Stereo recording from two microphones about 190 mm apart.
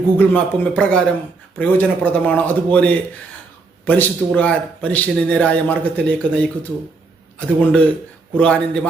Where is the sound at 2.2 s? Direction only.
10° left (ahead or behind).